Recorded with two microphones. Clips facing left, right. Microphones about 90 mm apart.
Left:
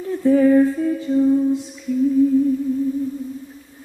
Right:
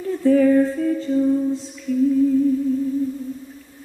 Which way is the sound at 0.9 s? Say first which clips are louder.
Left 2 dB; 15° left (ahead or behind).